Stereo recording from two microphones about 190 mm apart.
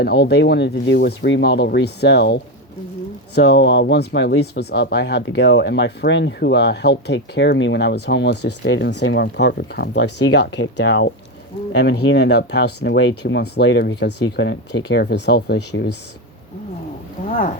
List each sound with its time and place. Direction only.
0.0 s speech: 60° left (ahead or behind)